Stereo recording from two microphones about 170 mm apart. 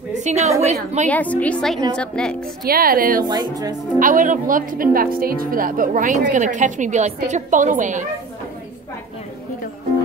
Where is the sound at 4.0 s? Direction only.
50° right (ahead or behind).